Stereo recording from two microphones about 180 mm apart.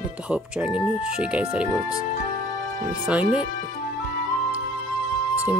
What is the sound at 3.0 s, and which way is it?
Speech, 5° right (ahead or behind).